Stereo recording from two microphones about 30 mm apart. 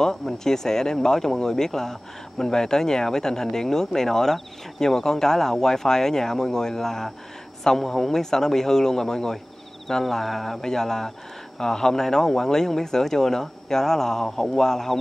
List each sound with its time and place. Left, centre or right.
0.0 s speech: centre
10.0 s speech: centre
10.6 s speech: centre